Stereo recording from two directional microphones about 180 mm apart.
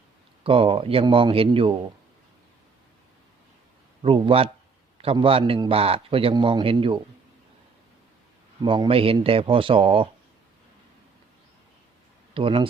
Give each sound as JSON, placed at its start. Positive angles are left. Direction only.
{"t": 0.4, "sound": "speech", "side_deg": -30}
{"t": 4.0, "sound": "a man's voice", "side_deg": -30}
{"t": 8.6, "sound": "a man's voice", "side_deg": -30}
{"t": 12.3, "sound": "speech", "side_deg": -30}